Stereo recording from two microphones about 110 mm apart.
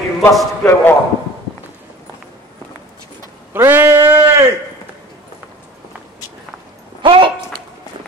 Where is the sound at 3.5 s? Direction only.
20° right (ahead or behind).